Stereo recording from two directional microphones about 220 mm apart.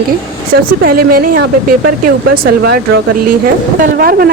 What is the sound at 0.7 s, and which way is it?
A woman's voice, 40° right (ahead or behind).